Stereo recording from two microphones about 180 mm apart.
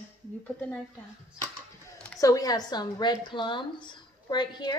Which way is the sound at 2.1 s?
20° left (ahead or behind).